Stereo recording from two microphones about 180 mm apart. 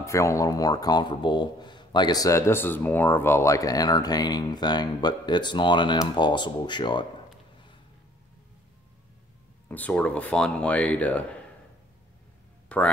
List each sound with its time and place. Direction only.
0.0 s speech: 15° left (ahead or behind)
9.7 s speech: 10° left (ahead or behind)
12.6 s a sound: 5° left (ahead or behind)